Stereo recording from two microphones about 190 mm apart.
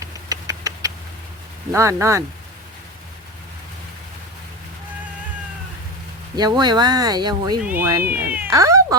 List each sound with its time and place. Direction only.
0.0 s a sound: 20° right (ahead or behind)
1.7 s speech: 15° right (ahead or behind)
6.3 s speech: 20° right (ahead or behind)
7.6 s speech: 10° right (ahead or behind)